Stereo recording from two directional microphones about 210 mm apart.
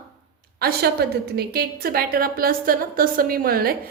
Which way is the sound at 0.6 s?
50° right (ahead or behind).